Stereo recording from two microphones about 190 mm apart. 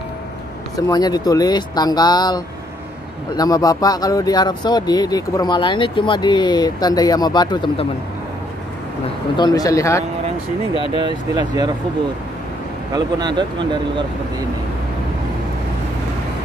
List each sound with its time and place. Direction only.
0.7 s speech: 20° left (ahead or behind)
9.4 s speech: 20° left (ahead or behind)
11.0 s speech: 25° right (ahead or behind)
12.9 s speech: 25° right (ahead or behind)